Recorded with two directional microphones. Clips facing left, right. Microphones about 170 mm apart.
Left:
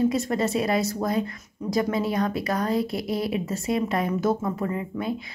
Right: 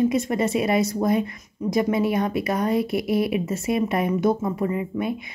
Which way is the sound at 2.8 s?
25° left (ahead or behind).